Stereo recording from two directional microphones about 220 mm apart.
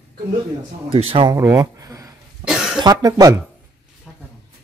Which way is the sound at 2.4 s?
Centre (ahead or behind).